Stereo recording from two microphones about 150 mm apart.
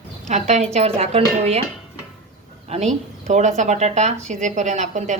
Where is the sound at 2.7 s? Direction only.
50° right (ahead or behind).